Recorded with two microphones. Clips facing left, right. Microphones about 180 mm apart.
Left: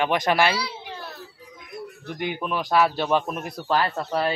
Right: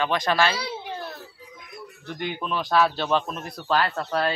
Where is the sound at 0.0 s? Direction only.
15° left (ahead or behind).